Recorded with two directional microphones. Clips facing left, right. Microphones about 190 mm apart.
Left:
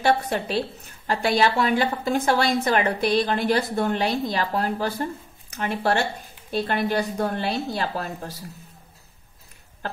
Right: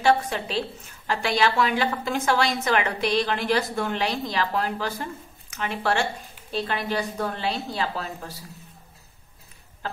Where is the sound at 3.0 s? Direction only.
50° left (ahead or behind).